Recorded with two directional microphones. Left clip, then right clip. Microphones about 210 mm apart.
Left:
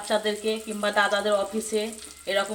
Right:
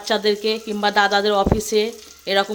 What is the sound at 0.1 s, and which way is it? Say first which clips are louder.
Speech: right 6 dB; 50° right (ahead or behind).